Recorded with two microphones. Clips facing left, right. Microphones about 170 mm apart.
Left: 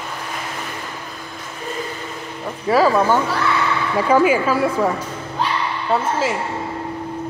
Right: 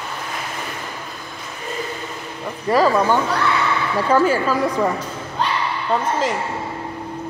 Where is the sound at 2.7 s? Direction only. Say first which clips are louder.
Left 1 dB; 5° left (ahead or behind).